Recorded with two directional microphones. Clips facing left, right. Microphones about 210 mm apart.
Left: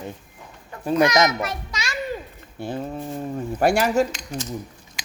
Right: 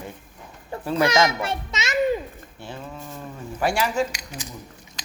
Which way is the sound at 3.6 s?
50° left (ahead or behind).